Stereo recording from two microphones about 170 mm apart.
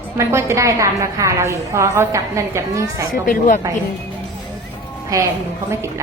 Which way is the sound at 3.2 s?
50° left (ahead or behind).